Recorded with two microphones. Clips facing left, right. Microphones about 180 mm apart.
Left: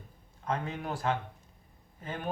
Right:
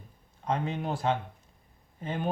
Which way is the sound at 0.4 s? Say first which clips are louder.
Right 3 dB; 25° right (ahead or behind).